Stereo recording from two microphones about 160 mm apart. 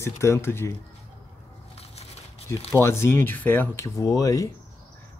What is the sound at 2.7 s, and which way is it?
Speech, 15° left (ahead or behind).